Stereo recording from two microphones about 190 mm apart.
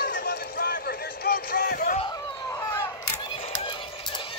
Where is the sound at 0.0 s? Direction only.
55° left (ahead or behind).